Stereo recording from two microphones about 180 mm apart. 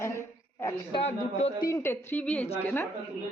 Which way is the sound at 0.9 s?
35° left (ahead or behind).